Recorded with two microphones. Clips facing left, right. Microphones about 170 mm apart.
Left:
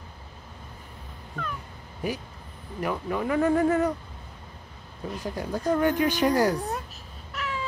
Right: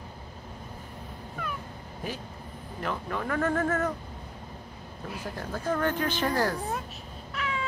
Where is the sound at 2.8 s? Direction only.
10° left (ahead or behind).